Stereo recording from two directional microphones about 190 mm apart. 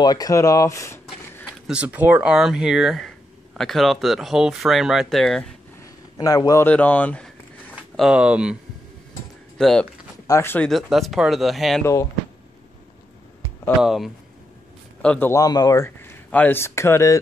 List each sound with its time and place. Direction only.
0.0 s speech: 20° left (ahead or behind)
1.7 s speech: 5° right (ahead or behind)
6.1 s speech: 20° left (ahead or behind)
7.9 s speech: centre (ahead or behind)
9.6 s speech: centre (ahead or behind)
10.2 s speech: 15° left (ahead or behind)
10.7 s speech: centre (ahead or behind)
11.8 s speech: 15° left (ahead or behind)
13.7 s speech: centre (ahead or behind); by 17.2 s 15° left (ahead or behind)